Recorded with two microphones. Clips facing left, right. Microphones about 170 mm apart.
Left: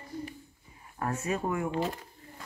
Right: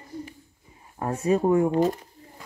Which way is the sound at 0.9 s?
25° right (ahead or behind).